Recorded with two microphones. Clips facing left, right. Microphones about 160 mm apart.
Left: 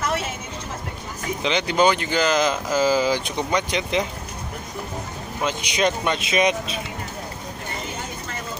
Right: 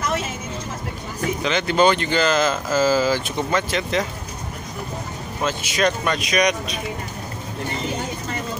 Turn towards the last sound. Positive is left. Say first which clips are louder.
# even
turn(degrees=25)  # may be behind; listen again after turning